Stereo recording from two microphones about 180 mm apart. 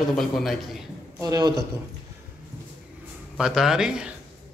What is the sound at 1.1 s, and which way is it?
Speech, 20° right (ahead or behind).